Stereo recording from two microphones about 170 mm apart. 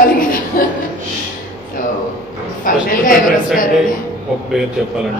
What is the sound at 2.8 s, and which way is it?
Speech, 55° left (ahead or behind).